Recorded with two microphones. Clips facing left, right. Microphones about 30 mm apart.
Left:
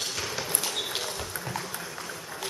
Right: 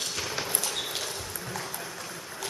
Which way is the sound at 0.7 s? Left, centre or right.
Centre.